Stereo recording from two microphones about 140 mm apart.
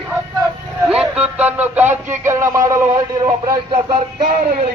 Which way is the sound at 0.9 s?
5° right (ahead or behind).